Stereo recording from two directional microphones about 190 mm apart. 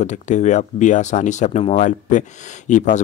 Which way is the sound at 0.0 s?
40° left (ahead or behind).